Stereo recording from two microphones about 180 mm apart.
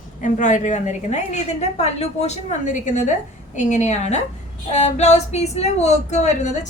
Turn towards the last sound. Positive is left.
turn(degrees=40)  # may be behind; listen again after turning